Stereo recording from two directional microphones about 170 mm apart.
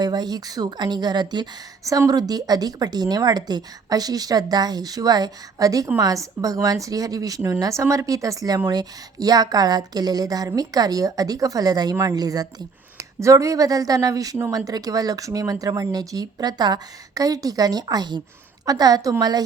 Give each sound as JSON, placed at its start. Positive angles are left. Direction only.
{"t": 0.0, "sound": "speech", "side_deg": -25}